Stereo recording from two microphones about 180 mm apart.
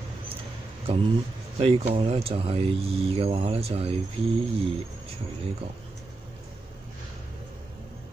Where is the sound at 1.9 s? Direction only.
35° right (ahead or behind).